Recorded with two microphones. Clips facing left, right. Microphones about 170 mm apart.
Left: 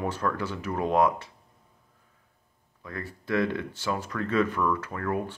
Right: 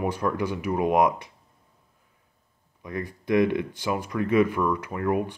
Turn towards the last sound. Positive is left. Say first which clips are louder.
# right 4 dB
turn(degrees=-15)  # may be behind; listen again after turning